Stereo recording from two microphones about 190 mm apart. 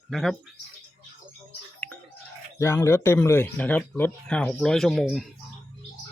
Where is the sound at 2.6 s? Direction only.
15° left (ahead or behind).